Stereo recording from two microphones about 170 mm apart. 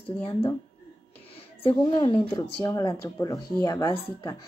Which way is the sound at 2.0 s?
20° left (ahead or behind).